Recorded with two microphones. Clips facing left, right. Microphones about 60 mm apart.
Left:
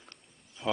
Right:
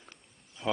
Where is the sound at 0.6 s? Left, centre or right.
Right.